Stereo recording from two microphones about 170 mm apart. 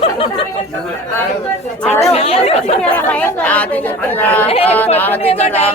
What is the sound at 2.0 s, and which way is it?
Speech, 35° left (ahead or behind).